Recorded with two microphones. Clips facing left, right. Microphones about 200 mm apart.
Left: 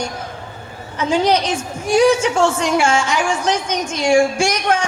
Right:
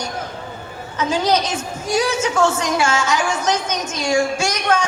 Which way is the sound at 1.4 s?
30° left (ahead or behind).